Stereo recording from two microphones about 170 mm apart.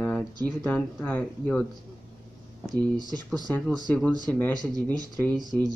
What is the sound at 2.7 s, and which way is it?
Speech, 25° right (ahead or behind).